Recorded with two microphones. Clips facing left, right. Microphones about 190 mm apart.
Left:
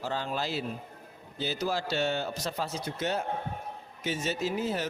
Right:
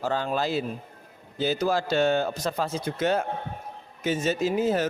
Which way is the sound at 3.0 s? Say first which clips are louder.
Right 7 dB; 90° right.